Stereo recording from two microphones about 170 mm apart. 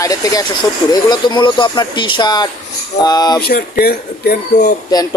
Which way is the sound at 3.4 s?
65° left (ahead or behind).